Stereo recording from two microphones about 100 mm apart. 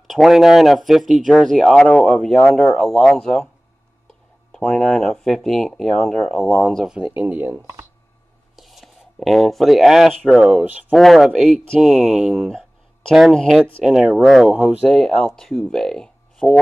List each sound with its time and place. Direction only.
0.0 s speech: centre (ahead or behind)
4.5 s speech: 5° left (ahead or behind)
6.9 s speech: 15° right (ahead or behind)
8.5 s speech: centre (ahead or behind)
10.6 s speech: 15° right (ahead or behind)
10.9 s speech: centre (ahead or behind)
14.9 s speech: centre (ahead or behind)